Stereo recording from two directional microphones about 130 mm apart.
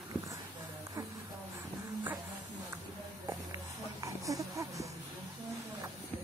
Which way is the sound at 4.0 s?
25° right (ahead or behind).